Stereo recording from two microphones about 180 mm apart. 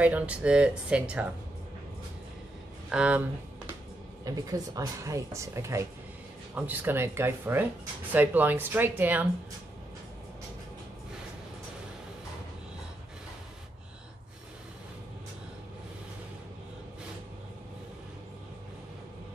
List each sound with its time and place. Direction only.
0.0 s speech: 5° right (ahead or behind)
2.9 s speech: 5° right (ahead or behind)
4.2 s speech: 20° right (ahead or behind)